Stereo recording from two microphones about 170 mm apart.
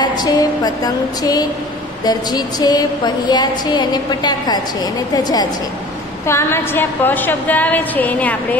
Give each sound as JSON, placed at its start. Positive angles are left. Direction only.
{"t": 0.0, "sound": "music", "side_deg": 25}
{"t": 6.2, "sound": "a woman's voice", "side_deg": 15}